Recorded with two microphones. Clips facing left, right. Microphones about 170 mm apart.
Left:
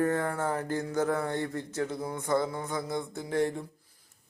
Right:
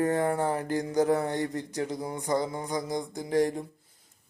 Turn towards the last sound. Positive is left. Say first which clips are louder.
# right 2 dB
turn(degrees=-15)  # may be behind; listen again after turning